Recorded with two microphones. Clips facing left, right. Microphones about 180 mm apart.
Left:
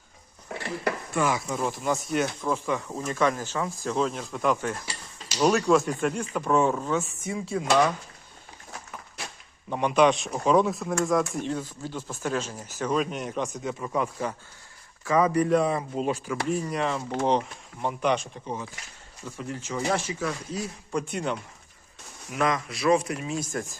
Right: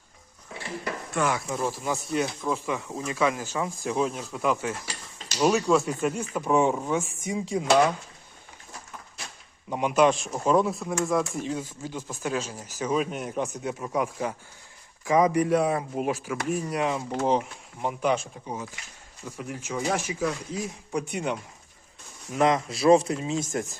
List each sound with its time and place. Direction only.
0.5 s dishes: 60° left (ahead or behind)
1.1 s speech: centre (ahead or behind); by 7.6 s 15° right (ahead or behind)
9.6 s speech: 10° right (ahead or behind)
11.8 s speech: 10° right (ahead or behind)
22.3 s speech: 25° right (ahead or behind)